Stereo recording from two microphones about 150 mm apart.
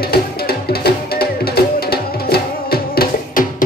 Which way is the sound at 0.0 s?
90° left.